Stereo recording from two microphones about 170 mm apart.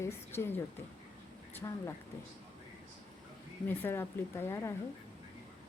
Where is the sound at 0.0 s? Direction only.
15° left (ahead or behind).